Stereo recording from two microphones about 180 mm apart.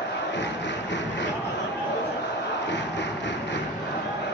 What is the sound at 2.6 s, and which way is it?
Music, 80° left.